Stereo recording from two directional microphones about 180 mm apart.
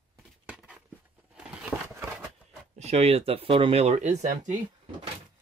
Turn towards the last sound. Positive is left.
turn(degrees=-45)  # may be behind; listen again after turning